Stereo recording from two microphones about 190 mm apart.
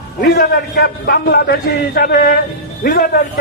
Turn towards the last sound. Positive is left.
turn(degrees=50)  # may be behind; listen again after turning